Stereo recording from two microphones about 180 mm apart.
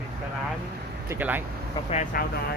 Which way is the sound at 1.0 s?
10° right (ahead or behind).